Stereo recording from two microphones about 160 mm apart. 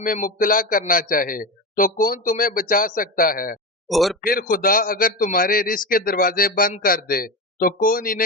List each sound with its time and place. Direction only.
0.0 s a man's voice: 60° left (ahead or behind)
3.8 s a man's voice: centre (ahead or behind)
4.2 s a man's voice: 65° left (ahead or behind)